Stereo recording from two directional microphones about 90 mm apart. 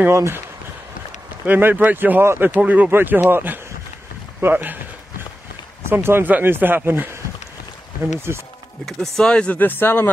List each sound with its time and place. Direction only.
0.1 s speech: 30° right (ahead or behind)
1.4 s speech: 20° right (ahead or behind)
5.9 s speech: 25° right (ahead or behind)
8.8 s speech: 5° left (ahead or behind); by 10.1 s 25° left (ahead or behind)